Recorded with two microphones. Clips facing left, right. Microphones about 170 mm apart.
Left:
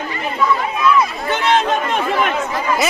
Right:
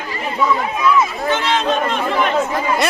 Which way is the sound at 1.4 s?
55° left (ahead or behind).